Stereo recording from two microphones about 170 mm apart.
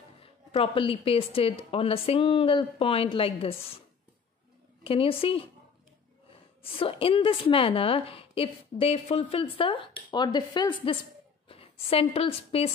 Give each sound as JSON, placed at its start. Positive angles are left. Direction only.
{"t": 0.2, "sound": "a woman's voice", "side_deg": 35}
{"t": 4.8, "sound": "a woman's voice", "side_deg": 35}
{"t": 6.6, "sound": "a woman's voice", "side_deg": 30}